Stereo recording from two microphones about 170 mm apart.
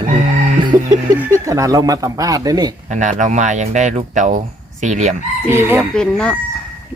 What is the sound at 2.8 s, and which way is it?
Speech, 45° right (ahead or behind).